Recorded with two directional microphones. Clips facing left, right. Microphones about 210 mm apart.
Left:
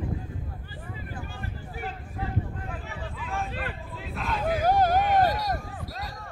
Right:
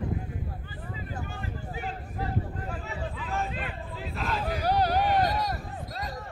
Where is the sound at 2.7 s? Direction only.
Centre (ahead or behind).